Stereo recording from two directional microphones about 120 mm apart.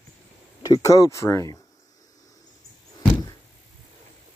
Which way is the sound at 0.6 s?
30° left (ahead or behind).